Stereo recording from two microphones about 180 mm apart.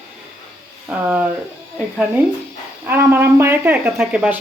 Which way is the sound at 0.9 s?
10° right (ahead or behind).